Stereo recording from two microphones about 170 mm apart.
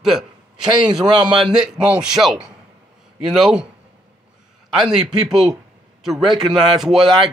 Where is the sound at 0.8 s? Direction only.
25° right (ahead or behind).